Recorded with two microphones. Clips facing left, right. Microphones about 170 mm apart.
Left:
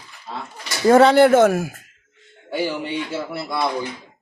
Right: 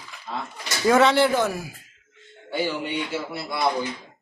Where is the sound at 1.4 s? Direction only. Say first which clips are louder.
Left 9 dB; 75° left (ahead or behind).